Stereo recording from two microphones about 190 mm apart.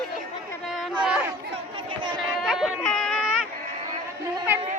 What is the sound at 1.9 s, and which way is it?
Chatter, 25° right (ahead or behind).